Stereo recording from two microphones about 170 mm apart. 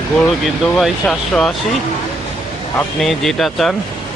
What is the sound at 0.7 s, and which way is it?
Speech, centre (ahead or behind).